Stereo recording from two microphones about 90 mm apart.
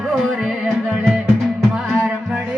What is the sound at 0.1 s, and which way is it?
Music, 5° right (ahead or behind).